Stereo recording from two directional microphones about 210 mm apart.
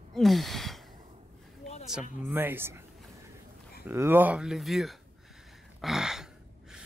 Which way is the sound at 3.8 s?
10° right (ahead or behind).